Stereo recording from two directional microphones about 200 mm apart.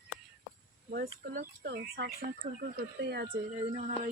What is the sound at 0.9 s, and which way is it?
Speech, 45° right (ahead or behind).